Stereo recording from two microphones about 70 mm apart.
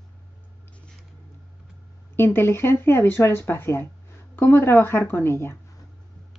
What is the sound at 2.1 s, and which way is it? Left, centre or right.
Speech, left.